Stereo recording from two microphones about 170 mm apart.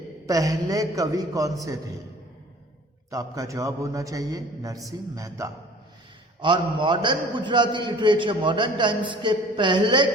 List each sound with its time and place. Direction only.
0.3 s a man's voice: 20° right (ahead or behind)
3.1 s a man's voice: 20° right (ahead or behind)